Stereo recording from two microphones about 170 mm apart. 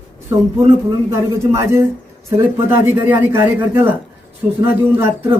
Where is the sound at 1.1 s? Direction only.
15° right (ahead or behind).